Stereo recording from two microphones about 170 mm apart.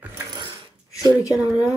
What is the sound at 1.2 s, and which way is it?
Speech, 20° left (ahead or behind).